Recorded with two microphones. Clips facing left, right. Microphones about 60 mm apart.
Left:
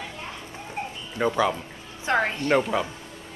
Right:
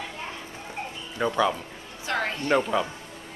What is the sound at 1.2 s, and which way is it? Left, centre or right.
Speech, centre.